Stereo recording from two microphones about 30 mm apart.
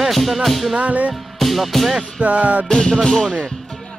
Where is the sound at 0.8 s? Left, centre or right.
Right.